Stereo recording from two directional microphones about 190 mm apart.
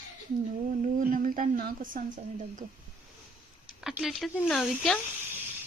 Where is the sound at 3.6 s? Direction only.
Centre (ahead or behind).